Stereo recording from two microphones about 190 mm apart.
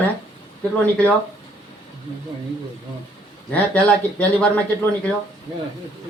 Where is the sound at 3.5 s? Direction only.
5° left (ahead or behind).